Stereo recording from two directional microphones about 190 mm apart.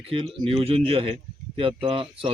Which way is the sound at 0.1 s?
30° right (ahead or behind).